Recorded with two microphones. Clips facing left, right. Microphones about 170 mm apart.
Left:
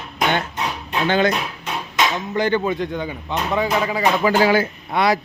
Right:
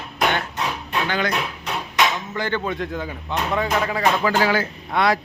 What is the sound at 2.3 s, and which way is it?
Speech, 15° left (ahead or behind).